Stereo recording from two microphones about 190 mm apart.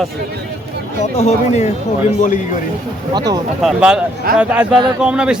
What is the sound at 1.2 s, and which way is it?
Speech, 35° left (ahead or behind).